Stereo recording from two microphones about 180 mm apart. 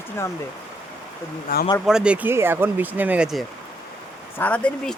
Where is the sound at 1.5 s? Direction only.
50° left (ahead or behind).